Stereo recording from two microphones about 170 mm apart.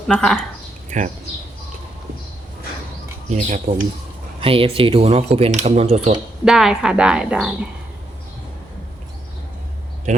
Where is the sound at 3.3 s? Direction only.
40° right (ahead or behind).